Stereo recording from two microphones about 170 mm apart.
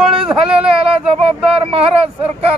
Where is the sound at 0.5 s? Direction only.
35° right (ahead or behind).